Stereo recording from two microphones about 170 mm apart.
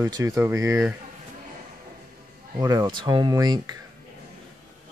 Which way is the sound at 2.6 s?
25° right (ahead or behind).